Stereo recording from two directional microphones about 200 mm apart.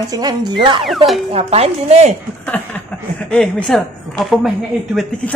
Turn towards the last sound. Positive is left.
turn(degrees=0)  # may be behind; listen again after turning